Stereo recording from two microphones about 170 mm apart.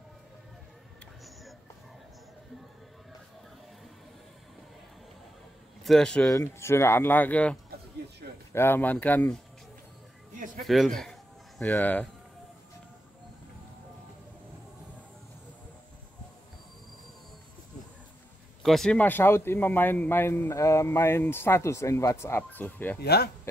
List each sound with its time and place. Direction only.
5.9 s speech: 5° left (ahead or behind)
6.3 s a man's voice: 15° left (ahead or behind)
8.2 s a sound: 60° right (ahead or behind)
8.5 s a man's voice: 15° left (ahead or behind)
10.3 s a sound: 50° right (ahead or behind)
10.6 s speech: centre (ahead or behind)
18.6 s a man's voice: centre (ahead or behind)
22.9 s speech: 70° left (ahead or behind)